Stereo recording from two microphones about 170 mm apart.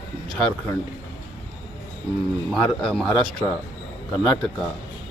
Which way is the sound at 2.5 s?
Centre (ahead or behind).